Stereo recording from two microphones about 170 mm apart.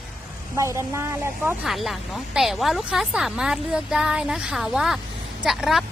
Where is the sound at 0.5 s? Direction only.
15° right (ahead or behind).